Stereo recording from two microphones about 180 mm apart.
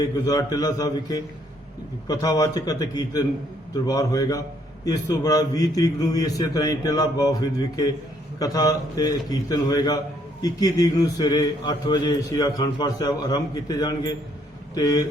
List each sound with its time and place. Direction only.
0.3 s a man's voice: 20° left (ahead or behind)